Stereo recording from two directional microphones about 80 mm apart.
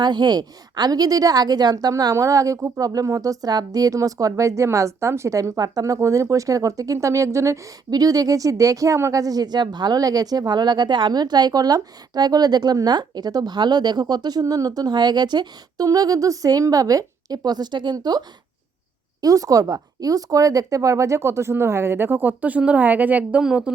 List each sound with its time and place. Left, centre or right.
0.0 s a woman's voice: right
7.9 s speech: right
15.9 s a woman's voice: right
17.9 s speech: right
19.2 s speech: right; by 23.7 s centre